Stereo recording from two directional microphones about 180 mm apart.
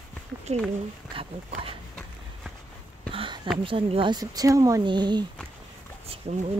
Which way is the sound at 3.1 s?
30° right (ahead or behind).